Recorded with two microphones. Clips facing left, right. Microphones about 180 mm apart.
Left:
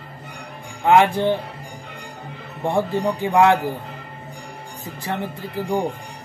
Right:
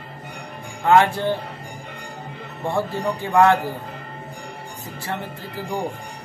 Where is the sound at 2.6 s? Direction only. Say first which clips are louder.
Left 3 dB; 15° left (ahead or behind).